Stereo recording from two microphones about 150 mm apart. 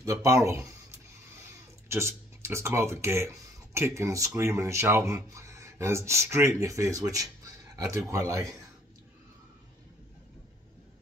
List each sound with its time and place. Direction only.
0.0 s speech: 20° right (ahead or behind)
1.9 s speech: 15° right (ahead or behind)